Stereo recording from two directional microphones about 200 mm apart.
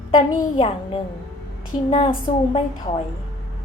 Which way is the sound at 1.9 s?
25° left (ahead or behind).